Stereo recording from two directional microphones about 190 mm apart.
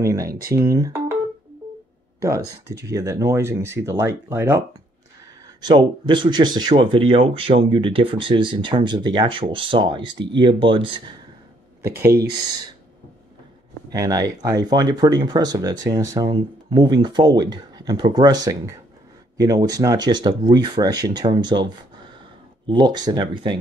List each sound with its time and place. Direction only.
0.0 s speech: 15° right (ahead or behind)
2.7 s speech: 15° right (ahead or behind)
5.6 s speech: 25° right (ahead or behind)
11.8 s speech: 15° right (ahead or behind)
12.1 s speech: 55° right (ahead or behind)
13.8 s speech: 20° right (ahead or behind)